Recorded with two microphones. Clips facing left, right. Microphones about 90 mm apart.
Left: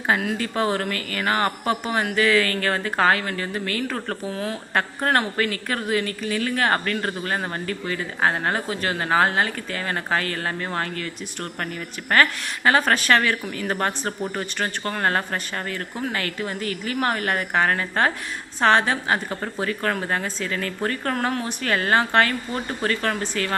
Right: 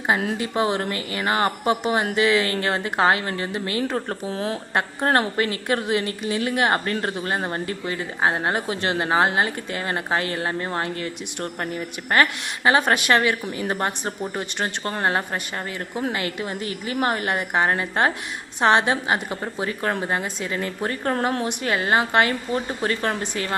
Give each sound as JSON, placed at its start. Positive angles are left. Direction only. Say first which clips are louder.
{"t": 0.3, "sound": "a woman's voice", "louder": "right 1 dB", "side_deg": -15}
{"t": 12.1, "sound": "a woman's voice", "louder": "even", "side_deg": -15}
{"t": 19.6, "sound": "speech", "louder": "even", "side_deg": -20}